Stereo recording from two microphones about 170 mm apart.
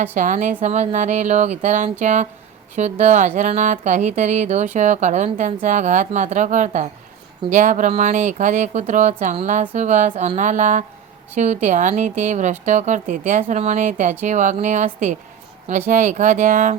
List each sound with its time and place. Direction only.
0.0 s speech: 45° right (ahead or behind)